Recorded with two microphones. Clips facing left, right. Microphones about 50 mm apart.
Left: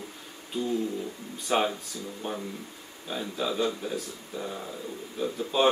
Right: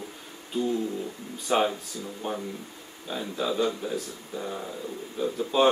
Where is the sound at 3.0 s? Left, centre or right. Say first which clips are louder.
Right 1 dB; centre.